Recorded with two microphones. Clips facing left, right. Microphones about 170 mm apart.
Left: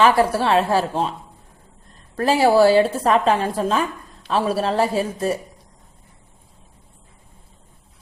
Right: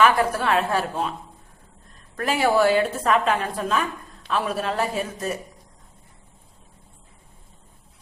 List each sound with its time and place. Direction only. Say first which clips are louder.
0.0 s a woman's voice: left 3 dB; 30° left (ahead or behind)
2.1 s a woman's voice: left 5 dB; 30° left (ahead or behind)